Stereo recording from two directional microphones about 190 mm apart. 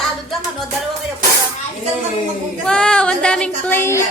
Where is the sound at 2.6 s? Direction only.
5° left (ahead or behind).